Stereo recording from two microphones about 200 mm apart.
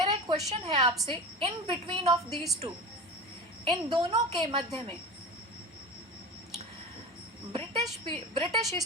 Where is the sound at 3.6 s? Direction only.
20° right (ahead or behind).